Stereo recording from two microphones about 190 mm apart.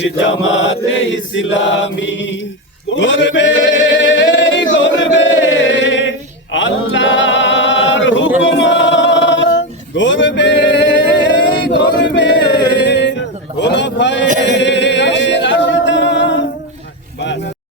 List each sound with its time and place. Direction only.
0.0 s chant: 75° left (ahead or behind)
2.9 s male singing: 70° left (ahead or behind)
11.7 s choir: 65° left (ahead or behind)
12.5 s music: 65° left (ahead or behind)
13.6 s a sound: 65° left (ahead or behind)
14.5 s a capella: 70° left (ahead or behind)
17.2 s a sound: 70° left (ahead or behind)